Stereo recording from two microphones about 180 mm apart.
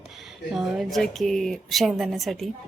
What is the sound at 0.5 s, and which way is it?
A woman's voice, centre (ahead or behind).